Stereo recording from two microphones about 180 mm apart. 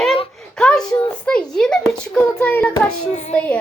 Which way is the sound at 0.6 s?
5° left (ahead or behind).